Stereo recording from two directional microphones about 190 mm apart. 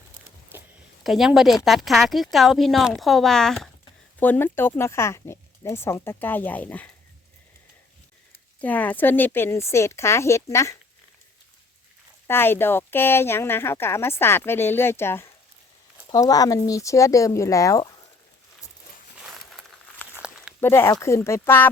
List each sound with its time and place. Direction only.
0.5 s a sound: 10° right (ahead or behind)
1.0 s a woman's voice: centre (ahead or behind)
8.6 s speech: 10° left (ahead or behind)
12.3 s speech: 10° left (ahead or behind)
19.2 s a sound: centre (ahead or behind)
20.1 s walk: 5° right (ahead or behind)
20.6 s speech: 10° left (ahead or behind)